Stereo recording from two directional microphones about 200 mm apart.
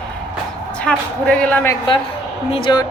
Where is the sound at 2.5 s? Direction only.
25° left (ahead or behind).